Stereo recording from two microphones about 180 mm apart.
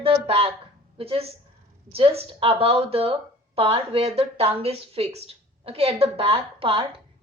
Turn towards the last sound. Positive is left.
turn(degrees=-30)  # may be behind; listen again after turning